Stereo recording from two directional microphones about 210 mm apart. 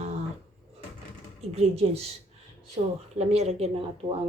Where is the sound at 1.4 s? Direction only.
30° right (ahead or behind).